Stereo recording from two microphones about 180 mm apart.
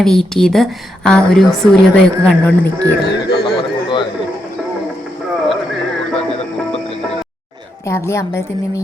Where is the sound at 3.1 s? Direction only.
65° left (ahead or behind).